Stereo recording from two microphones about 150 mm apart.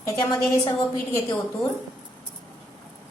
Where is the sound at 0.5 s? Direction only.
25° left (ahead or behind).